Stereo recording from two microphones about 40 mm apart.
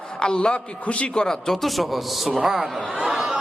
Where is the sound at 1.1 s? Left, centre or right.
Centre.